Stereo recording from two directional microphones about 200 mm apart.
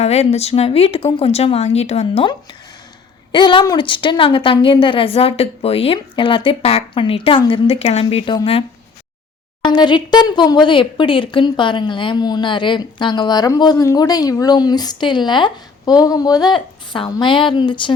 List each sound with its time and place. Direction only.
0.0 s speech: 30° left (ahead or behind)
3.3 s speech: 25° left (ahead or behind)
9.6 s speech: 20° left (ahead or behind)